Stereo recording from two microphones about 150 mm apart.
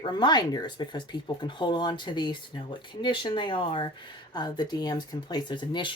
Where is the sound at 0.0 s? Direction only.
30° left (ahead or behind).